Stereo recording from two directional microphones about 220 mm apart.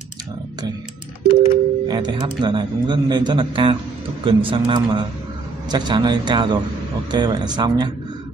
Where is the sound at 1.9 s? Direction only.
20° right (ahead or behind).